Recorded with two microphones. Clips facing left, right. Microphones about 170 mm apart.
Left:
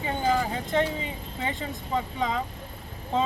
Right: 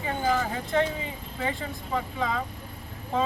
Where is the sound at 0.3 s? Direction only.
20° left (ahead or behind).